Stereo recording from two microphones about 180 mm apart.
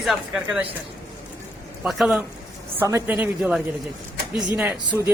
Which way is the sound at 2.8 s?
15° right (ahead or behind).